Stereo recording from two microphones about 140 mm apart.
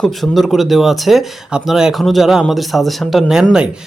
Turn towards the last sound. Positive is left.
turn(degrees=-5)  # may be behind; listen again after turning